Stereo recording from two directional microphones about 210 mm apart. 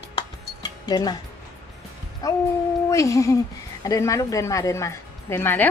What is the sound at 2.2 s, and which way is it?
A woman's voice, 15° left (ahead or behind).